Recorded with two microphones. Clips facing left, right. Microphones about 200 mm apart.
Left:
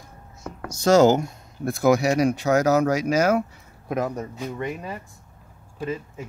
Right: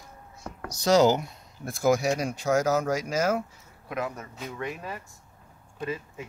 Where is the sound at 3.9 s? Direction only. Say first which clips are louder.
Left 6 dB; 40° left (ahead or behind).